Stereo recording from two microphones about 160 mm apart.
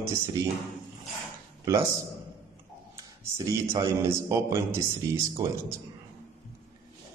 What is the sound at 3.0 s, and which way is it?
A man's voice, 25° right (ahead or behind).